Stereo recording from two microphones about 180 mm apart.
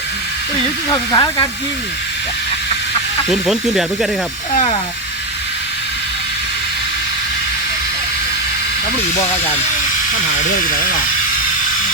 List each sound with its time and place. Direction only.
0.9 s speech: 20° left (ahead or behind)
3.2 s speech: centre (ahead or behind)
4.5 s speech: 35° left (ahead or behind)
10.4 s speech: 50° left (ahead or behind)